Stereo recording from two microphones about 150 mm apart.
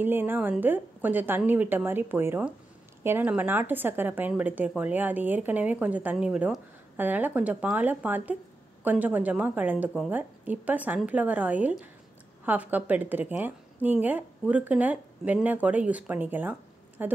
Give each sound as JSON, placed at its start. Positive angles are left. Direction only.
{"t": 0.0, "sound": "speech", "side_deg": -15}